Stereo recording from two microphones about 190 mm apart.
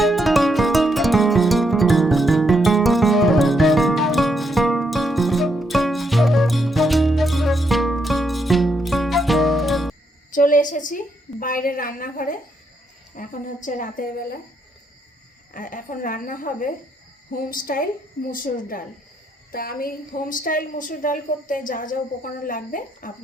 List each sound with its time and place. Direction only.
0.0 s music: centre (ahead or behind)
10.3 s a sound: 45° left (ahead or behind)
13.1 s a woman's voice: 45° left (ahead or behind)
15.5 s a woman's voice: 45° left (ahead or behind)